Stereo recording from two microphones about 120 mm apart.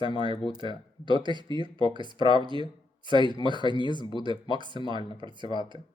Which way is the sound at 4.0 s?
40° left (ahead or behind).